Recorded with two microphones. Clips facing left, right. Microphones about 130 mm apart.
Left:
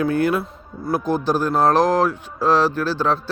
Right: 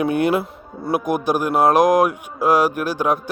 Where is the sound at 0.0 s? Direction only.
20° right (ahead or behind).